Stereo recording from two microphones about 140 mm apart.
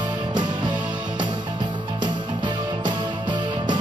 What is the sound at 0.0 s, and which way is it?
Music, 30° right (ahead or behind).